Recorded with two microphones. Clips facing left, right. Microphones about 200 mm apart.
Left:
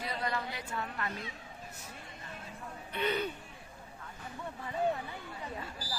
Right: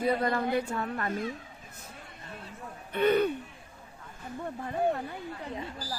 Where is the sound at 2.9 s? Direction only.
55° right (ahead or behind).